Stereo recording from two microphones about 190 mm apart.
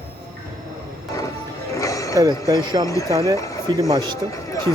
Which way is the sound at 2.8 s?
15° left (ahead or behind).